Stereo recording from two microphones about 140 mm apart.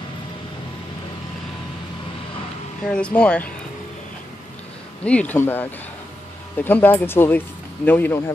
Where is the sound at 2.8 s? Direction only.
5° left (ahead or behind).